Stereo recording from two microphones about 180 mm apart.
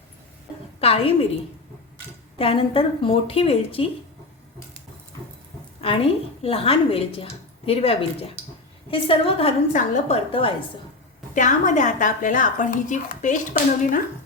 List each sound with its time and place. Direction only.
0.8 s a sound: 30° left (ahead or behind)
2.4 s a woman's voice: 30° left (ahead or behind)
6.4 s a woman's voice: 30° left (ahead or behind)
10.4 s a woman's voice: 30° left (ahead or behind)
11.3 s speech: 45° left (ahead or behind)